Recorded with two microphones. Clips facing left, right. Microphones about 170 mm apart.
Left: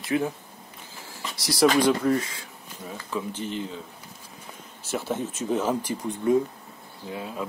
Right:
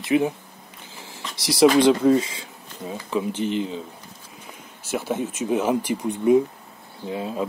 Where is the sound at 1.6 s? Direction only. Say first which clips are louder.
Right 5 dB; 20° right (ahead or behind).